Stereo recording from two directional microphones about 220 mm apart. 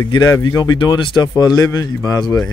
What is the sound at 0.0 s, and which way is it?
Speech, 15° left (ahead or behind).